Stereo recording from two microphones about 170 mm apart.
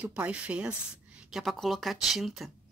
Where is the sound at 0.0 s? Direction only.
10° right (ahead or behind).